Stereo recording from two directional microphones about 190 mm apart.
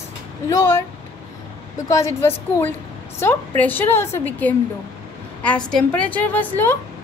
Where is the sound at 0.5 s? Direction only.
15° left (ahead or behind).